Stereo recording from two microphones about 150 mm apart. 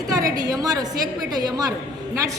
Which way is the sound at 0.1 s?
20° right (ahead or behind).